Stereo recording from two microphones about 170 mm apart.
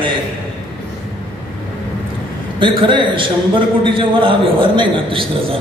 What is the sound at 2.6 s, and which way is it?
A man's voice, 30° right (ahead or behind).